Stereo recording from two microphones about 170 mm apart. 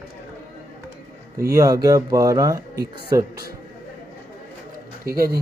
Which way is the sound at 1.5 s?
20° right (ahead or behind).